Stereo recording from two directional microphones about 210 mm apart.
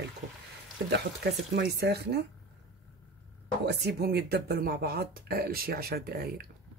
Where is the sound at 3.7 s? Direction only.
50° right (ahead or behind).